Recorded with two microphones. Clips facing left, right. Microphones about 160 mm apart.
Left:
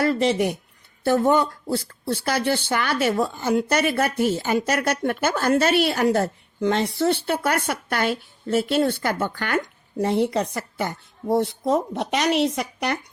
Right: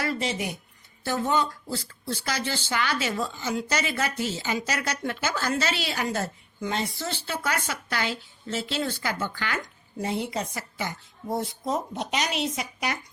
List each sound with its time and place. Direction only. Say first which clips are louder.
0.0 s speech: left 9 dB; 60° left (ahead or behind)